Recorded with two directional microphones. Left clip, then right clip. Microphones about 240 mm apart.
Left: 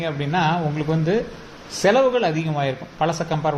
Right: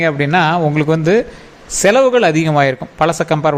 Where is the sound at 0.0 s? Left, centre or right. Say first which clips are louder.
Right 9 dB; right.